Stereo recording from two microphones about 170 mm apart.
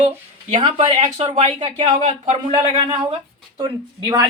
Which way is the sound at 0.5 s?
40° right (ahead or behind).